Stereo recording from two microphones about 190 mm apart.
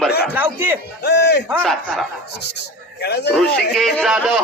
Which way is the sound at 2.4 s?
60° left (ahead or behind).